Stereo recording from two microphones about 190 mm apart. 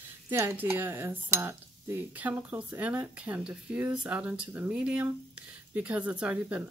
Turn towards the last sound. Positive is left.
turn(degrees=-10)  # may be behind; listen again after turning